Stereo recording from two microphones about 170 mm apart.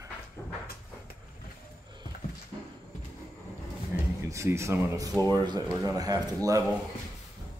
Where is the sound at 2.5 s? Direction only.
25° right (ahead or behind).